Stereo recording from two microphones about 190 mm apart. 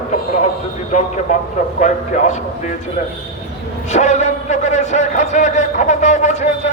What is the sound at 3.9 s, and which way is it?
A man's voice, 40° left (ahead or behind).